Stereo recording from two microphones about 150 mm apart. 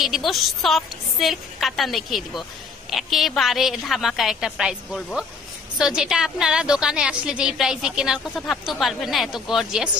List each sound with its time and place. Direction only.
0.0 s a woman's voice: centre (ahead or behind)